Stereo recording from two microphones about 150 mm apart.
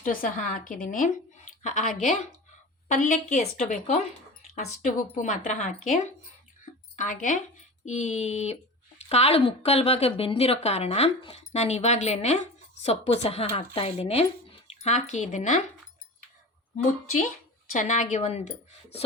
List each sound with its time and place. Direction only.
0.0 s speech: 65° left (ahead or behind)
2.9 s speech: 55° left (ahead or behind)
4.5 s a woman's voice: 60° left (ahead or behind)
16.7 s a woman's voice: 50° left (ahead or behind)